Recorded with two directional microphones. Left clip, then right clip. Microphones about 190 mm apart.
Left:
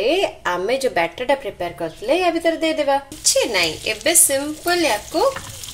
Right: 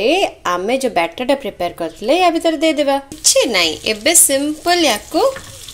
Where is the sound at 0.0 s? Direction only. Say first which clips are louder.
Right 4 dB; 30° right (ahead or behind).